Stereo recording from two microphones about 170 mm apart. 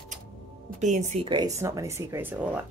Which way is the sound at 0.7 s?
45° right (ahead or behind).